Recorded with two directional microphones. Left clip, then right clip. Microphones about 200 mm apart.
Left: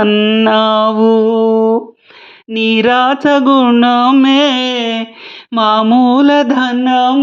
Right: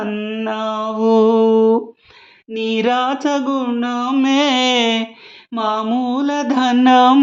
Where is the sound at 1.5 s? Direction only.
30° right (ahead or behind).